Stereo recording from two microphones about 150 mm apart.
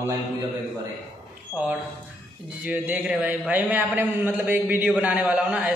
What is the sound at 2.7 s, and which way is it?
A man's voice, 10° right (ahead or behind).